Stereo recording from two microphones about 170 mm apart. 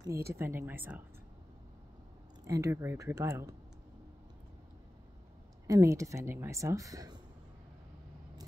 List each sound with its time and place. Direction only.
0.0 s speech: 15° right (ahead or behind)
2.4 s speech: 20° right (ahead or behind)
5.7 s speech: 20° right (ahead or behind)